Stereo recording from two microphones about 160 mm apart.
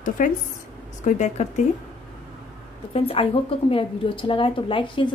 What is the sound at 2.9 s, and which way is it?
A woman's voice, 35° left (ahead or behind).